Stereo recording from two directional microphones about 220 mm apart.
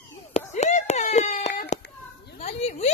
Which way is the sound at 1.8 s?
50° left (ahead or behind).